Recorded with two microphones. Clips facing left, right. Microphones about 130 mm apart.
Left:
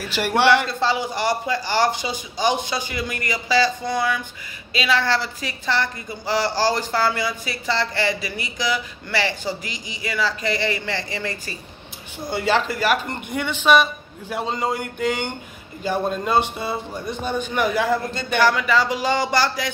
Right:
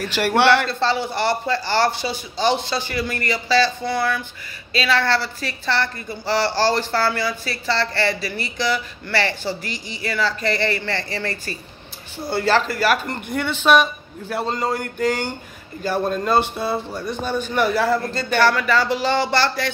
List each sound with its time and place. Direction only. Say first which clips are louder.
0.0 s a woman's voice: right 2 dB; 10° left (ahead or behind)
14.7 s mantra: right 2 dB; 45° right (ahead or behind)
15.8 s a woman's voice: right 1 dB; 15° left (ahead or behind)
17.6 s a woman's voice: right 1 dB; 15° left (ahead or behind)